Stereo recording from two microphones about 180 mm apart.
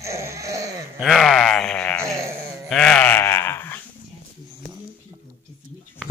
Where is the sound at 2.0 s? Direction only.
15° right (ahead or behind).